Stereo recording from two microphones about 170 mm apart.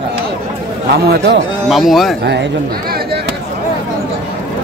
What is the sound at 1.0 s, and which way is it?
Speech, 75° right (ahead or behind).